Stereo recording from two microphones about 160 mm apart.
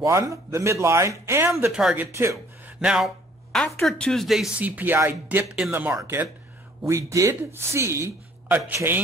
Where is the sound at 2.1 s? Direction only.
15° right (ahead or behind).